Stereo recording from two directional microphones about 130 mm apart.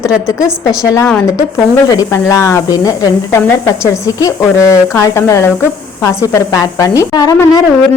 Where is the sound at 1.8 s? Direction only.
25° left (ahead or behind).